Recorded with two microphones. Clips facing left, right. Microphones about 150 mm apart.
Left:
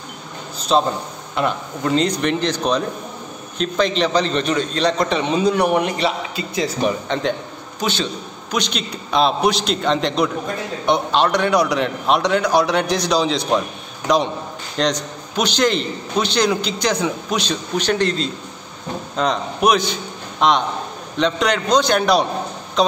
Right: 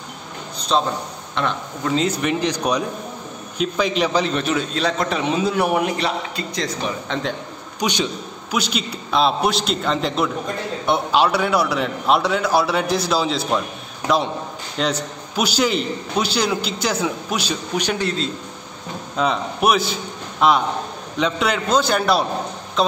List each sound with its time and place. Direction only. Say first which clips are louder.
0.6 s a sound: left 3 dB; 5° left (ahead or behind)
1.3 s a man's voice: left 3 dB; 5° left (ahead or behind)
7.8 s a man's voice: even; 15° right (ahead or behind)